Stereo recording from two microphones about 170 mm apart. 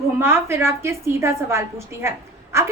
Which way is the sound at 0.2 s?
15° right (ahead or behind).